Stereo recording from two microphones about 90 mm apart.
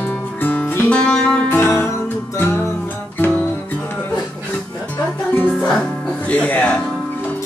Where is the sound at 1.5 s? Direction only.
25° left (ahead or behind).